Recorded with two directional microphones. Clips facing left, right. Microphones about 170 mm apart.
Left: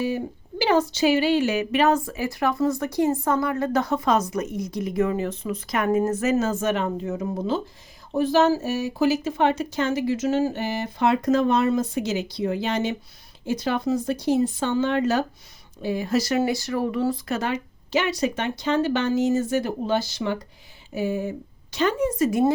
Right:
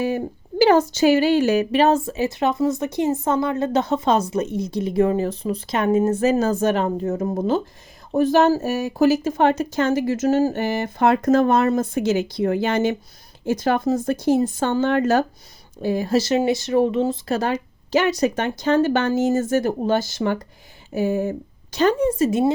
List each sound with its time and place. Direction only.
0.6 s a woman's voice: 45° right (ahead or behind)
16.1 s a woman's voice: 25° right (ahead or behind)
17.3 s speech: 40° right (ahead or behind)